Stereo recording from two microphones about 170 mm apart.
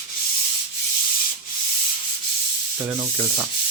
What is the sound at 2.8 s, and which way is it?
Sanding, 15° right (ahead or behind).